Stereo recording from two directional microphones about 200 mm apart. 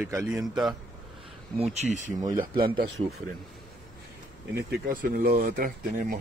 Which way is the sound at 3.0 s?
40° right (ahead or behind).